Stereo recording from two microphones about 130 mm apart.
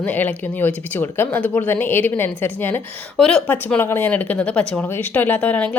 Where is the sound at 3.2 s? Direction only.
5° left (ahead or behind).